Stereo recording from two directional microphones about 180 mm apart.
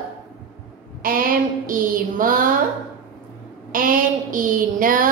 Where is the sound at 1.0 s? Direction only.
50° right (ahead or behind).